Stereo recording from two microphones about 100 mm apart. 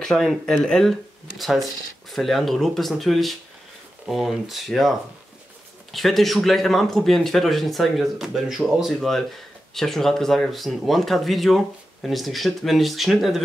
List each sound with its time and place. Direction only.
0.0 s speech: centre (ahead or behind)